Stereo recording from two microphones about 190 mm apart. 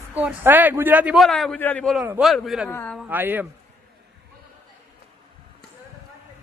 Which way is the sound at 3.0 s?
10° right (ahead or behind).